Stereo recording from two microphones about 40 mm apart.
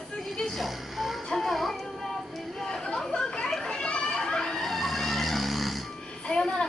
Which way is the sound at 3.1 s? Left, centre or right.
Left.